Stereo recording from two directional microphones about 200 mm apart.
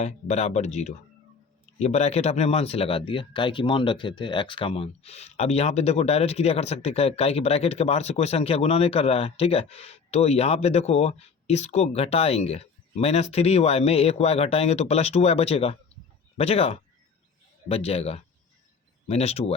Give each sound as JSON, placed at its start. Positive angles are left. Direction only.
{"t": 0.0, "sound": "speech", "side_deg": 35}